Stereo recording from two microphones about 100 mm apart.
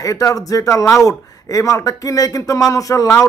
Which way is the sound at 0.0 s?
35° left (ahead or behind).